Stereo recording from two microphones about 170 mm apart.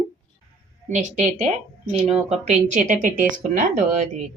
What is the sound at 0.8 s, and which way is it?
Speech, 45° right (ahead or behind).